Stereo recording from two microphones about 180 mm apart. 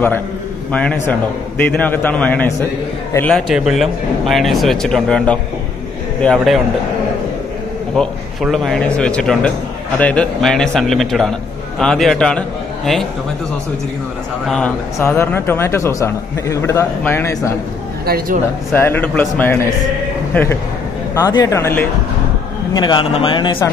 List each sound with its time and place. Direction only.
0.7 s a man's voice: 5° left (ahead or behind)
8.0 s speech: centre (ahead or behind)
15.0 s a man's voice: 15° left (ahead or behind)
18.0 s a man's voice: 55° right (ahead or behind)
18.7 s a man's voice: 10° left (ahead or behind)
21.1 s a man's voice: 20° left (ahead or behind)
22.8 s speech: 25° left (ahead or behind)